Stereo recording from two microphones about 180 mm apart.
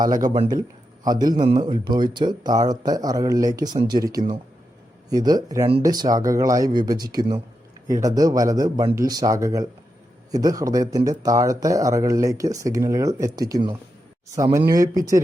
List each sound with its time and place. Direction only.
1.0 s speech: 20° right (ahead or behind)